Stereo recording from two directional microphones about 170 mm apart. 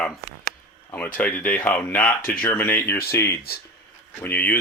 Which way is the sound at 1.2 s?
10° left (ahead or behind).